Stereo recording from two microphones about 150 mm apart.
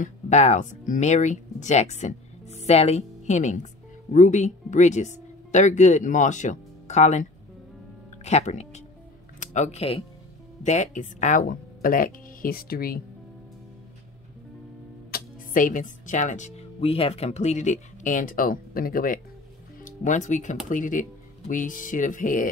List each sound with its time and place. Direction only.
0.0 s speech: 50° left (ahead or behind)
10.6 s speech: 55° left (ahead or behind); by 13.0 s 80° left
15.0 s speech: 75° left (ahead or behind)
19.8 s speech: 55° left (ahead or behind)